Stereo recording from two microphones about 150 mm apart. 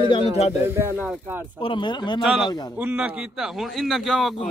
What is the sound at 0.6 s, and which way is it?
Speech, 15° right (ahead or behind).